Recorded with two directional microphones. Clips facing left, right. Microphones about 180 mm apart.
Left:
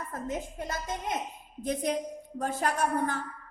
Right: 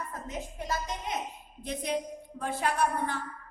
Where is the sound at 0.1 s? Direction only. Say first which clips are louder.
Left 4 dB; 50° left (ahead or behind).